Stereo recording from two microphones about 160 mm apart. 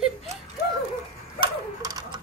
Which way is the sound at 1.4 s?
25° right (ahead or behind).